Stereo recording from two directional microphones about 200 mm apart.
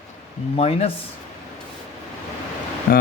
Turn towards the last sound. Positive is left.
turn(degrees=45)  # may be behind; listen again after turning